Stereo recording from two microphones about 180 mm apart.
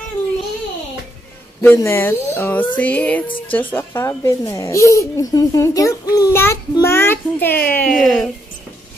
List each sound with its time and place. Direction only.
1.6 s speech: 15° left (ahead or behind)
3.3 s speech: 30° left (ahead or behind)
3.7 s speech: 15° left (ahead or behind)